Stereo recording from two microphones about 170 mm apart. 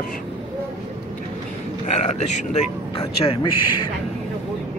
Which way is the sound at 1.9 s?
40° left (ahead or behind).